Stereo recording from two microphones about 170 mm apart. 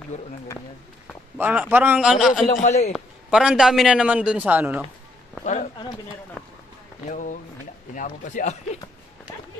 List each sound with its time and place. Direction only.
1.4 s a man's voice: 10° right (ahead or behind)
2.5 s speech: 45° left (ahead or behind)
2.9 s a man's voice: 5° right (ahead or behind)
5.4 s a man's voice: 45° left (ahead or behind)
7.1 s speech: 50° left (ahead or behind)